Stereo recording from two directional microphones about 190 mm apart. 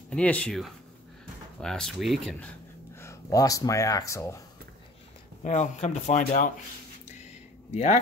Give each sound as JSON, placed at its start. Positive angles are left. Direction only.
{"t": 0.1, "sound": "speech", "side_deg": 5}
{"t": 3.0, "sound": "speech", "side_deg": 15}
{"t": 5.4, "sound": "speech", "side_deg": 35}
{"t": 7.7, "sound": "speech", "side_deg": 35}